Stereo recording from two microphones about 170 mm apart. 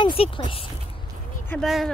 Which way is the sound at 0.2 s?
35° left (ahead or behind).